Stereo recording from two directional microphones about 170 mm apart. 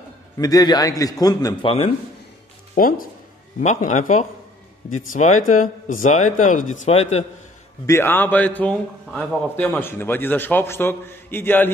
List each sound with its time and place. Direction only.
0.4 s a man's voice: 20° left (ahead or behind)
2.7 s speech: 55° left (ahead or behind)
3.6 s speech: 45° left (ahead or behind)
7.8 s a man's voice: 15° left (ahead or behind)